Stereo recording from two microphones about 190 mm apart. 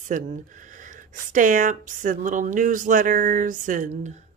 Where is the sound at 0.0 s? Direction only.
40° right (ahead or behind).